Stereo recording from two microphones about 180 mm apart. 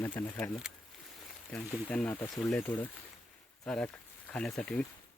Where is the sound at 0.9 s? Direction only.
Centre (ahead or behind).